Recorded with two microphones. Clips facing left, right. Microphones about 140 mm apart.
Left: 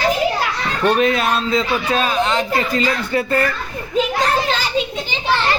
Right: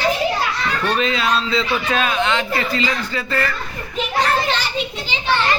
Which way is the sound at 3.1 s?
55° left (ahead or behind).